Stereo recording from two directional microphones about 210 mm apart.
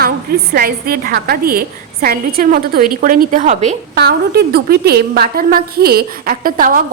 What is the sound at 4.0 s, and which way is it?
A woman's voice, 50° right (ahead or behind).